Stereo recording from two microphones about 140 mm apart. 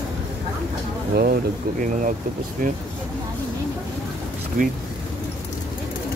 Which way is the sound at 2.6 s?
90° right.